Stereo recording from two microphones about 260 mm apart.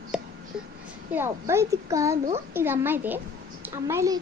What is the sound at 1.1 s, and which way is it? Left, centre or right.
Speech, centre.